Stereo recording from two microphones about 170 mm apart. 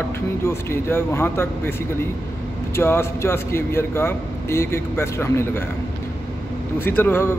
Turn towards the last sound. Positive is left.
turn(degrees=15)  # may be behind; listen again after turning